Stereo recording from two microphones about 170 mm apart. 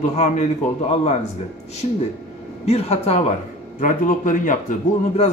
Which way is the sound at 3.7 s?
50° left (ahead or behind).